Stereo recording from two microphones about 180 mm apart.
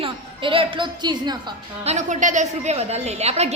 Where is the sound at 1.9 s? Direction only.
40° right (ahead or behind).